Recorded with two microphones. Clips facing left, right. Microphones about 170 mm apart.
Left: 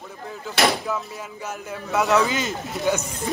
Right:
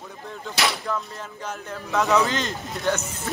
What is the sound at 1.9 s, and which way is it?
Speech, 10° left (ahead or behind).